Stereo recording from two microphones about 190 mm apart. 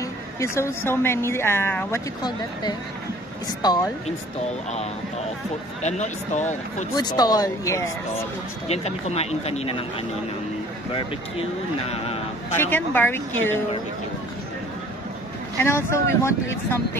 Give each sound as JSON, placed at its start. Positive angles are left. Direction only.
{"t": 0.4, "sound": "a woman's voice", "side_deg": 15}
{"t": 3.6, "sound": "speech", "side_deg": 20}
{"t": 5.8, "sound": "speech", "side_deg": 40}
{"t": 7.0, "sound": "a woman's voice", "side_deg": 20}
{"t": 8.6, "sound": "speech", "side_deg": 35}
{"t": 10.9, "sound": "speech", "side_deg": 30}
{"t": 12.5, "sound": "a woman's voice", "side_deg": 10}
{"t": 15.5, "sound": "a woman's voice", "side_deg": 15}